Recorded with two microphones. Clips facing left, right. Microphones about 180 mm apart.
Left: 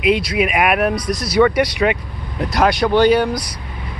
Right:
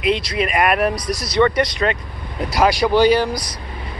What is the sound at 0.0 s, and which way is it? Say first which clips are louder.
Speech: left 3 dB; 5° left (ahead or behind).